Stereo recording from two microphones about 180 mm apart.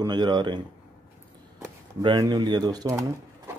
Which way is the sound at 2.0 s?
20° right (ahead or behind).